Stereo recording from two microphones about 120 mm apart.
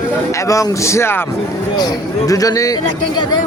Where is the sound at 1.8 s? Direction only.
30° left (ahead or behind).